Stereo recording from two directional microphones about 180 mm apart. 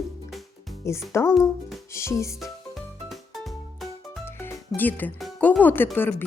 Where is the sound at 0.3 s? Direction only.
Centre (ahead or behind).